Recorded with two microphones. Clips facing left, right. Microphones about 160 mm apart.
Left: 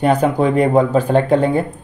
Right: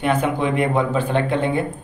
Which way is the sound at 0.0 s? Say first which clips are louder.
Left 5 dB; 40° left (ahead or behind).